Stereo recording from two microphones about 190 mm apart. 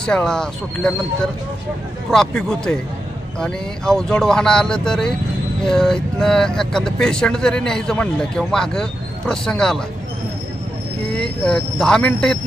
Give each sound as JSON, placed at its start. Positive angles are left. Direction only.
{"t": 0.0, "sound": "speech", "side_deg": 5}
{"t": 11.1, "sound": "speech", "side_deg": 5}